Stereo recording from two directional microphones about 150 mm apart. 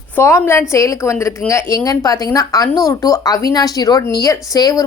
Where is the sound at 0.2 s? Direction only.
15° left (ahead or behind).